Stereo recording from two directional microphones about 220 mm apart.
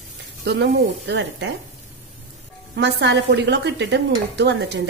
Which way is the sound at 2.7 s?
50° right (ahead or behind).